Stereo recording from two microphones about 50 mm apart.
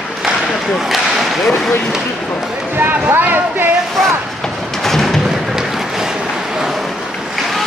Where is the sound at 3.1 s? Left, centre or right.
Right.